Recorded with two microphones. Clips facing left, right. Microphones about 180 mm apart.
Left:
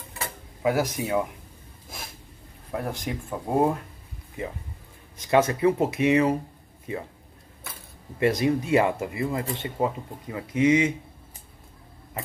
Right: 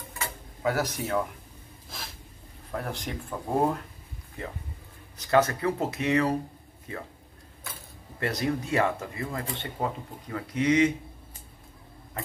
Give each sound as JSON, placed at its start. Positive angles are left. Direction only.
{"t": 0.6, "sound": "speech", "side_deg": 15}
{"t": 2.7, "sound": "speech", "side_deg": 10}
{"t": 5.3, "sound": "speech", "side_deg": 20}
{"t": 8.3, "sound": "speech", "side_deg": 20}